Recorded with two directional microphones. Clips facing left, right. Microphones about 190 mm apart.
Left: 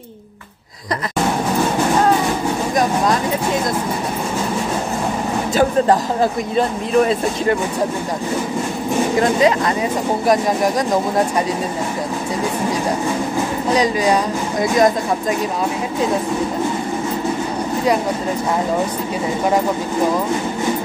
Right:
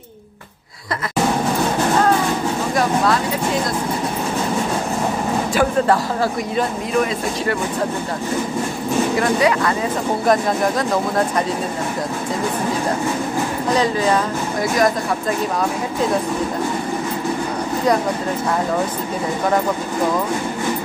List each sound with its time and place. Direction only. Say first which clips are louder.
9.2 s speech: left 4 dB; 20° left (ahead or behind)
13.7 s speech: left 1 dB; 15° left (ahead or behind)